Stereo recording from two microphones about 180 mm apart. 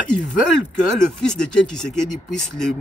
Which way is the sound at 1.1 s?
5° left (ahead or behind).